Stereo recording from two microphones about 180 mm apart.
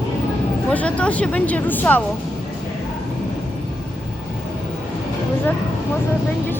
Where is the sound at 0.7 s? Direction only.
5° left (ahead or behind).